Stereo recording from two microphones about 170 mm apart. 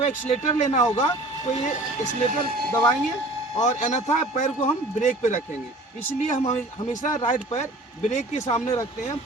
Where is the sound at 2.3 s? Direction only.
65° right (ahead or behind).